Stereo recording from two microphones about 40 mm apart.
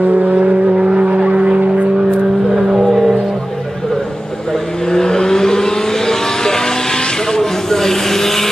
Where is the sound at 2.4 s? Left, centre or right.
Centre.